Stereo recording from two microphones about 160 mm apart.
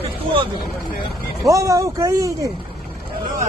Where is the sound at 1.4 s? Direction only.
20° right (ahead or behind).